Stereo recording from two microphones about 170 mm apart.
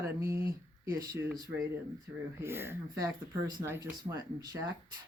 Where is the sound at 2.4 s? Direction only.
15° right (ahead or behind).